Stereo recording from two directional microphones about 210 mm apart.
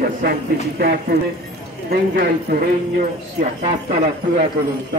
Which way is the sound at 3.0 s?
30° right (ahead or behind).